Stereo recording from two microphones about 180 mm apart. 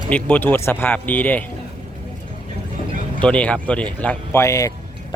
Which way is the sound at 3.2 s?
5° left (ahead or behind).